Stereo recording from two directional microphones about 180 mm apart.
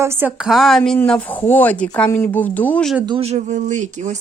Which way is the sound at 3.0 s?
30° right (ahead or behind).